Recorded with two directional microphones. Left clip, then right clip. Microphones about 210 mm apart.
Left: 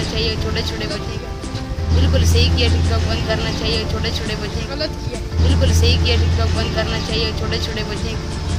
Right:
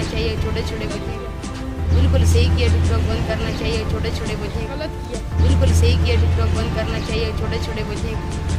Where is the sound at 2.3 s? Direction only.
15° right (ahead or behind).